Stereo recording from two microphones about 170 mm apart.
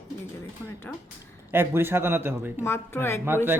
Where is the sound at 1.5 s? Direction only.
15° right (ahead or behind).